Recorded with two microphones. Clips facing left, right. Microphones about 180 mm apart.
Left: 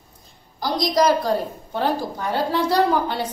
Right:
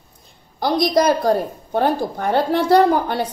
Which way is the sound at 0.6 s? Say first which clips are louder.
Right 3 dB; 60° right (ahead or behind).